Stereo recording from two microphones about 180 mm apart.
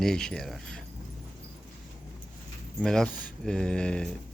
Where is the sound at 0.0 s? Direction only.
5° left (ahead or behind).